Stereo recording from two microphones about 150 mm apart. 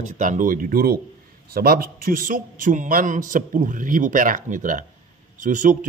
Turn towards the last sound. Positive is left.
turn(degrees=-60)  # may be behind; listen again after turning